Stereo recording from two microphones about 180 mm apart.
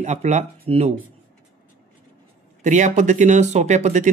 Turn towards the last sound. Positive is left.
turn(degrees=-40)  # may be behind; listen again after turning